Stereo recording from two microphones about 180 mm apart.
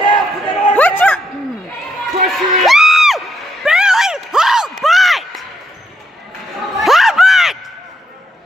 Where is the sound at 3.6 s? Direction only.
5° right (ahead or behind).